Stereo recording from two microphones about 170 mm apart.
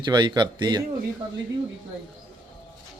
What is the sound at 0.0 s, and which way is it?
Speech, 25° right (ahead or behind).